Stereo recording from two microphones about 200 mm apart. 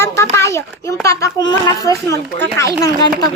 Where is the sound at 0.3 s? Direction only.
15° left (ahead or behind).